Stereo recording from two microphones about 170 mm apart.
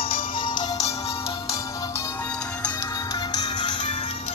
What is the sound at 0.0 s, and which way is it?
Music, 35° left (ahead or behind).